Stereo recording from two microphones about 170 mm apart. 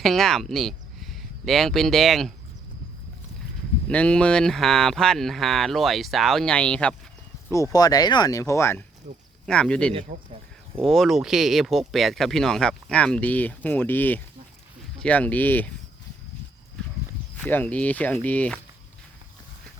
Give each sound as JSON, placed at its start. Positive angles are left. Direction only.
{"t": 0.0, "sound": "speech", "side_deg": 0}
{"t": 3.8, "sound": "speech", "side_deg": 5}
{"t": 7.5, "sound": "speech", "side_deg": 20}
{"t": 9.5, "sound": "speech", "side_deg": 5}
{"t": 9.9, "sound": "speech", "side_deg": -30}
{"t": 10.8, "sound": "speech", "side_deg": 0}
{"t": 17.3, "sound": "speech", "side_deg": 10}